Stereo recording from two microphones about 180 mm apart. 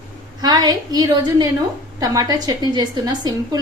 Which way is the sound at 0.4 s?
20° right (ahead or behind).